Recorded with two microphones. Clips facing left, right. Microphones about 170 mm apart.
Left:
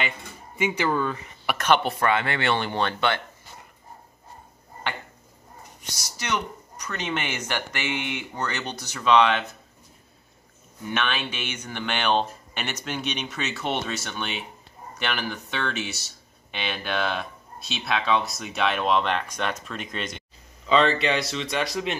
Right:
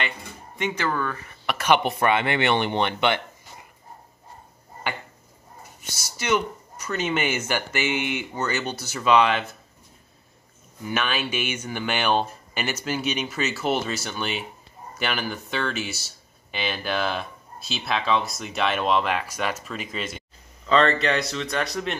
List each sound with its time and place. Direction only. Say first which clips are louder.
0.6 s speech: left 2 dB; 10° left (ahead or behind)
1.6 s speech: right 1 dB; 15° right (ahead or behind)
5.8 s speech: right 2 dB; centre (ahead or behind)
10.9 s speech: right 2 dB; 5° right (ahead or behind)